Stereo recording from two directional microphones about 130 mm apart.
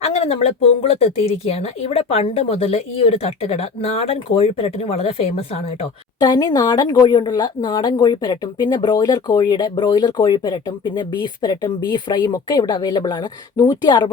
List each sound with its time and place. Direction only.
0.0 s speech: 50° left (ahead or behind)
6.1 s speech: 35° left (ahead or behind)